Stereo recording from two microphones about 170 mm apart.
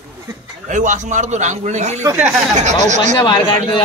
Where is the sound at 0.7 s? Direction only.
45° right (ahead or behind).